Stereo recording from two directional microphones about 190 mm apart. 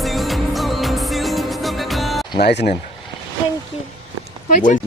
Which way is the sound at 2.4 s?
60° left (ahead or behind).